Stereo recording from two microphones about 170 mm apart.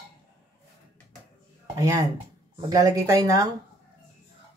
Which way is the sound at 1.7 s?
20° right (ahead or behind).